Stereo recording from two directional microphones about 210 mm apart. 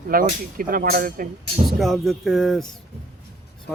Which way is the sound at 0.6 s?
40° right (ahead or behind).